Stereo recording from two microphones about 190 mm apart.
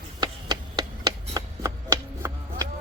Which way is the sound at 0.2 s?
20° right (ahead or behind).